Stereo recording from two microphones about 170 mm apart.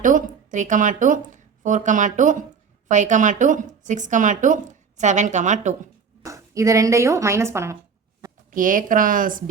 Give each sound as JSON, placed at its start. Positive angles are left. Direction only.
{"t": 0.0, "sound": "a woman's voice", "side_deg": -50}
{"t": 6.2, "sound": "speech", "side_deg": -20}
{"t": 8.4, "sound": "a woman's voice", "side_deg": -50}